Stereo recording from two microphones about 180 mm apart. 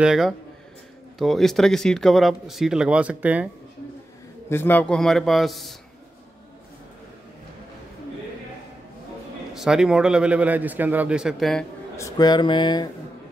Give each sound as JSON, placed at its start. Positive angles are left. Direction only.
{"t": 0.0, "sound": "speech", "side_deg": -5}
{"t": 4.5, "sound": "speech", "side_deg": 10}
{"t": 9.5, "sound": "speech", "side_deg": -5}
{"t": 12.0, "sound": "a sound", "side_deg": 25}